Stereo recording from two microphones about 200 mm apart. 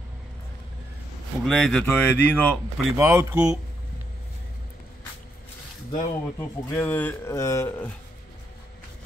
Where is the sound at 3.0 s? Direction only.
15° right (ahead or behind).